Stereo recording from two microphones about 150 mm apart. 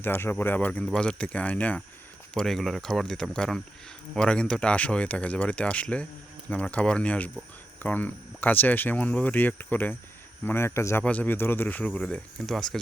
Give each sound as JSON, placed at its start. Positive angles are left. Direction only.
{"t": 0.0, "sound": "speech", "side_deg": 15}